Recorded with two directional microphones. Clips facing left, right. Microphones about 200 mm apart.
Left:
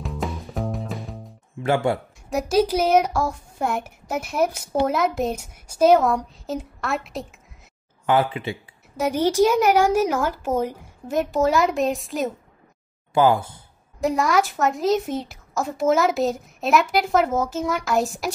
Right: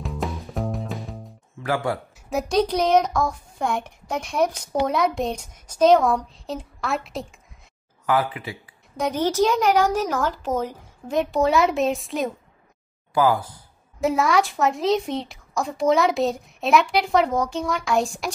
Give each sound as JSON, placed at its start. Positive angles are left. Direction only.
{"t": 0.0, "sound": "music", "side_deg": 0}
{"t": 1.6, "sound": "speech", "side_deg": 25}
{"t": 2.2, "sound": "speech", "side_deg": 0}
{"t": 8.1, "sound": "speech", "side_deg": 25}
{"t": 8.9, "sound": "speech", "side_deg": 10}
{"t": 13.1, "sound": "speech", "side_deg": 25}
{"t": 14.0, "sound": "speech", "side_deg": 0}